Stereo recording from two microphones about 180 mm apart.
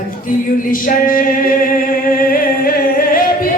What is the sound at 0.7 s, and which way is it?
Music, 50° left (ahead or behind).